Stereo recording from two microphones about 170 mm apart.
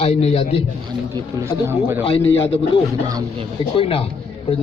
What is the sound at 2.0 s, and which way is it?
A man's voice, 30° left (ahead or behind).